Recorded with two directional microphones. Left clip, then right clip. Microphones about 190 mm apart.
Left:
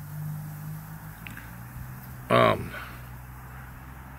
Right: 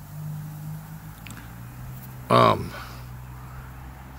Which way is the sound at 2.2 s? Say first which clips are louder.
Right 3 dB; 5° right (ahead or behind).